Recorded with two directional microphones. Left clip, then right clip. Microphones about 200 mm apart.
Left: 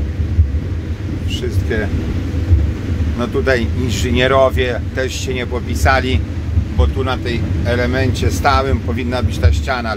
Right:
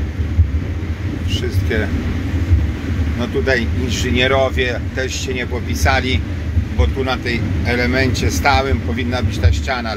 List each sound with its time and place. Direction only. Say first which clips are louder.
1.3 s air conditioning: even; 5° left (ahead or behind)
3.2 s speech: left 2 dB; 20° left (ahead or behind)
6.8 s speech: even; 5° left (ahead or behind)